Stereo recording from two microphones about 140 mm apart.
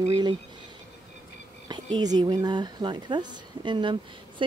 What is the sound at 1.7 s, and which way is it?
Speech, 30° right (ahead or behind).